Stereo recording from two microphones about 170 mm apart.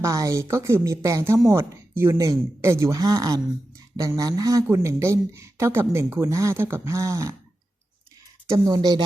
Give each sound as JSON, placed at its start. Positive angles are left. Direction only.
{"t": 0.0, "sound": "speech", "side_deg": -20}
{"t": 8.4, "sound": "speech", "side_deg": -20}